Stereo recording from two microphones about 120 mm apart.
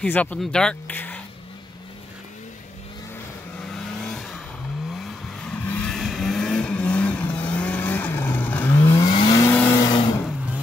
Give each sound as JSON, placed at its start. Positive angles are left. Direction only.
{"t": 0.0, "sound": "speech", "side_deg": 10}
{"t": 3.5, "sound": "vehicle", "side_deg": 5}
{"t": 9.0, "sound": "vehicle", "side_deg": 40}
{"t": 9.5, "sound": "vehicle", "side_deg": 15}
{"t": 9.8, "sound": "vehicle", "side_deg": 35}